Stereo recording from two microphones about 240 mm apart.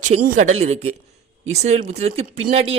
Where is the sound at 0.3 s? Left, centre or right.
Right.